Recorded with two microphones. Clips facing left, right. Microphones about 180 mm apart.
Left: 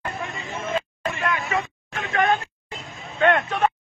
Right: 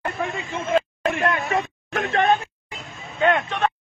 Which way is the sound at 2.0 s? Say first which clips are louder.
Right 2 dB; 30° right (ahead or behind).